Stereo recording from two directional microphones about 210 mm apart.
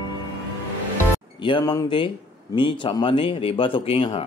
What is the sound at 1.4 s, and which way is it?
Speech, 20° left (ahead or behind).